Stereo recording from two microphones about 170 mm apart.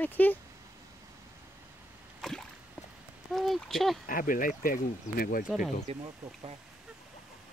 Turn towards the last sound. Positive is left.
turn(degrees=-5)  # may be behind; listen again after turning